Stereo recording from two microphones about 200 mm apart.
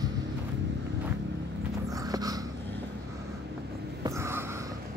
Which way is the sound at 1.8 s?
20° right (ahead or behind).